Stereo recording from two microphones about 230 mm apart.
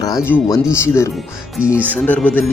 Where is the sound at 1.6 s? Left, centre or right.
Centre.